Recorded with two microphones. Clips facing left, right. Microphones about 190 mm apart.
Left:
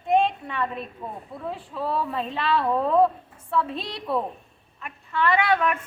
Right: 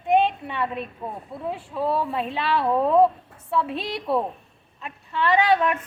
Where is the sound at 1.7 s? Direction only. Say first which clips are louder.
Right 3 dB; 10° right (ahead or behind).